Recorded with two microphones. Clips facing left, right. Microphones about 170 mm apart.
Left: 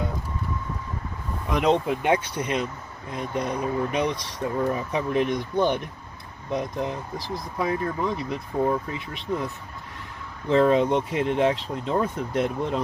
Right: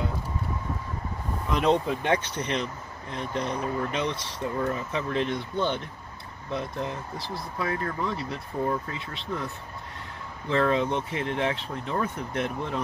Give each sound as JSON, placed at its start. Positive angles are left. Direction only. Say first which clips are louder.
{"t": 1.6, "sound": "speech", "louder": "left 2 dB", "side_deg": 15}
{"t": 10.5, "sound": "speech", "louder": "left 5 dB", "side_deg": 20}